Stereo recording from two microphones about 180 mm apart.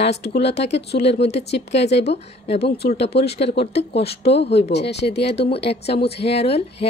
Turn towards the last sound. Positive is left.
turn(degrees=35)  # may be behind; listen again after turning